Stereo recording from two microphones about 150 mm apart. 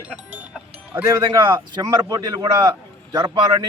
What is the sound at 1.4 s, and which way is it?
A man's voice, 25° right (ahead or behind).